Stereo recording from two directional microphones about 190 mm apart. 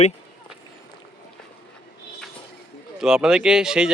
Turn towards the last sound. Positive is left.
turn(degrees=-5)  # may be behind; listen again after turning